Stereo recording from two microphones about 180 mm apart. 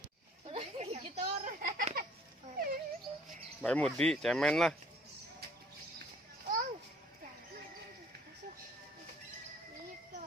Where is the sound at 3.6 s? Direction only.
5° left (ahead or behind).